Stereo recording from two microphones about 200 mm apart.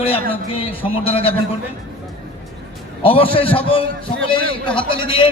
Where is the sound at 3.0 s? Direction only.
25° left (ahead or behind).